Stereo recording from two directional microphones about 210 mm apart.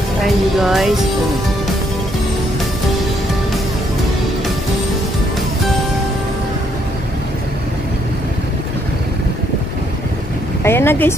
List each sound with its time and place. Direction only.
0.2 s music: centre (ahead or behind)
10.6 s vehicle: 10° left (ahead or behind)